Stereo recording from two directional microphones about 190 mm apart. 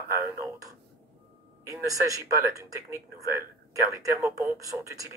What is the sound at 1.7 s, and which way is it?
Speech, 15° right (ahead or behind).